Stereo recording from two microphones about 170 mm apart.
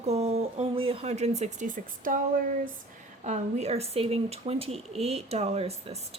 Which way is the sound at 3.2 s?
40° right (ahead or behind).